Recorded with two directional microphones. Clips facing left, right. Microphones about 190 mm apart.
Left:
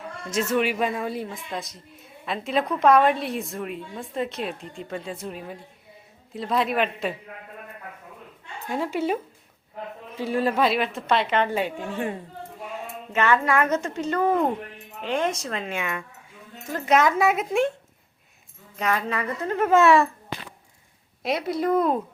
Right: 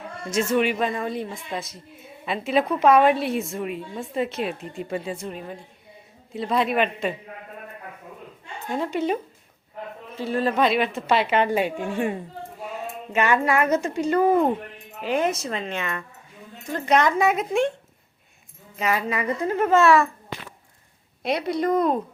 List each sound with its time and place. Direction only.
0.3 s speech: centre (ahead or behind)
5.1 s speech: centre (ahead or behind)
8.7 s speech: 5° left (ahead or behind)
10.2 s speech: 10° left (ahead or behind); by 12.1 s 10° right (ahead or behind)
13.1 s a woman's voice: 10° right (ahead or behind)
18.8 s a woman's voice: 5° right (ahead or behind)
19.7 s speech: 20° left (ahead or behind)
21.2 s speech: centre (ahead or behind)